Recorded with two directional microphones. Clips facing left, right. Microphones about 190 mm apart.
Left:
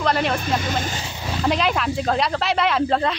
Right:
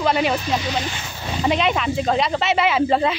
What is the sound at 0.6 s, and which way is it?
Speech, 50° left (ahead or behind).